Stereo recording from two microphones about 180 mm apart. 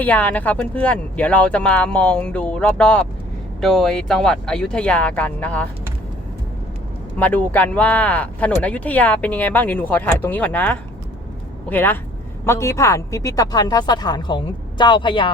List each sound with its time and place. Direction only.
0.0 s speech: 10° left (ahead or behind)
7.2 s a woman's voice: 10° left (ahead or behind); by 15.3 s 25° left (ahead or behind)